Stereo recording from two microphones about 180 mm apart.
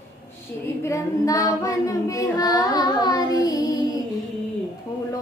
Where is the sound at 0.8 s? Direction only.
20° left (ahead or behind).